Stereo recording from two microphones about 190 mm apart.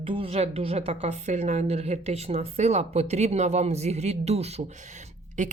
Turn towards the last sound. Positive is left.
turn(degrees=-35)  # may be behind; listen again after turning